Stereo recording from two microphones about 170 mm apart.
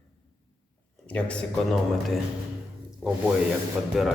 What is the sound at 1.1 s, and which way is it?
Speech, 5° left (ahead or behind).